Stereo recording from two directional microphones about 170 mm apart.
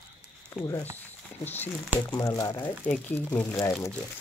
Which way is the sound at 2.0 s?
20° left (ahead or behind).